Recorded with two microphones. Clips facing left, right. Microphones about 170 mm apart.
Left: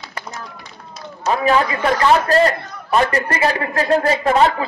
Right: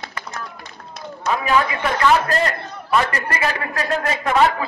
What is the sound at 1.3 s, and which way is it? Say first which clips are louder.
A man's voice: left 3 dB; 35° left (ahead or behind).